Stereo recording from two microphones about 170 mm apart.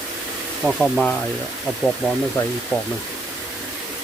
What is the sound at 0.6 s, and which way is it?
Speech, 5° left (ahead or behind).